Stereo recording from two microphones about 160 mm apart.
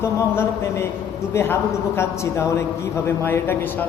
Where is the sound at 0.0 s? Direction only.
15° left (ahead or behind).